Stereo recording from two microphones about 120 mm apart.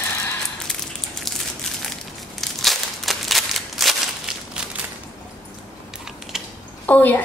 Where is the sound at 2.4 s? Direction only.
Centre (ahead or behind).